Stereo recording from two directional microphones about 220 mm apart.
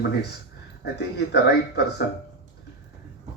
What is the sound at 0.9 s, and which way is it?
Speech, 50° left (ahead or behind).